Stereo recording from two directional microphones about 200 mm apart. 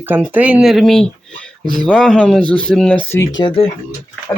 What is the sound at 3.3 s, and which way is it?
Speech, 25° left (ahead or behind).